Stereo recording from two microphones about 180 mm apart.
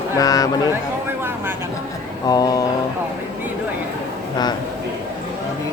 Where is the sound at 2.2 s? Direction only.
20° left (ahead or behind).